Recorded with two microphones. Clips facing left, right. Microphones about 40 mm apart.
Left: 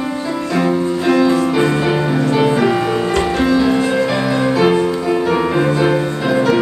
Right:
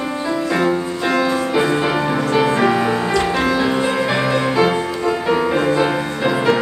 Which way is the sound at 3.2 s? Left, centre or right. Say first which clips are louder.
Left 2 dB; right.